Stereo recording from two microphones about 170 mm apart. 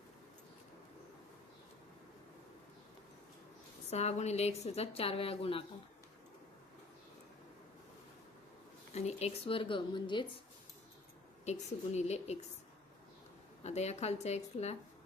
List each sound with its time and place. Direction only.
3.8 s a woman's voice: 40° left (ahead or behind)
9.0 s a woman's voice: 40° left (ahead or behind)
11.4 s a woman's voice: 40° left (ahead or behind)
13.7 s a woman's voice: 40° left (ahead or behind)